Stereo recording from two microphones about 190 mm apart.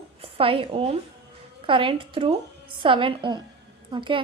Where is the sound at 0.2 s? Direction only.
30° right (ahead or behind).